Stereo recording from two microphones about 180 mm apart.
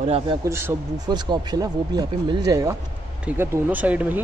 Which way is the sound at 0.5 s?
15° right (ahead or behind).